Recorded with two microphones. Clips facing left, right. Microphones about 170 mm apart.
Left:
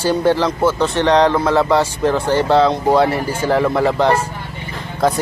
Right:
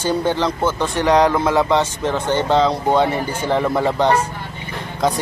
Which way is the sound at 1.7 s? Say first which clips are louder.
Left 3 dB; centre (ahead or behind).